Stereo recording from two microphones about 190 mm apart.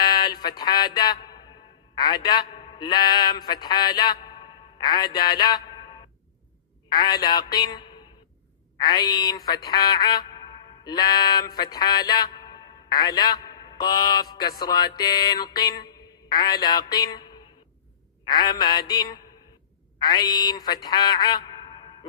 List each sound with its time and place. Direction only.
0.1 s a sound: 20° left (ahead or behind)
2.0 s a man's voice: 20° left (ahead or behind)
6.9 s music: 20° left (ahead or behind)